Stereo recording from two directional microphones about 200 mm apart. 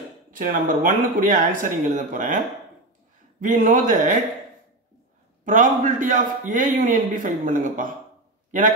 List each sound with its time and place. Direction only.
0.3 s a man's voice: 45° right (ahead or behind)
5.4 s a man's voice: 40° right (ahead or behind)